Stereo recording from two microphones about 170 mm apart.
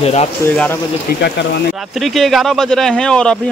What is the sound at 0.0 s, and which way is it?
Speech, 40° left (ahead or behind).